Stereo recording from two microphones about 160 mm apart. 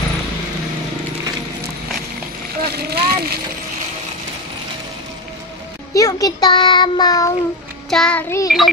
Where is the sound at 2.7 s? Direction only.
80° right.